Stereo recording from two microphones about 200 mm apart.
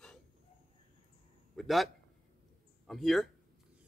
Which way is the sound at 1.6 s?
Centre (ahead or behind).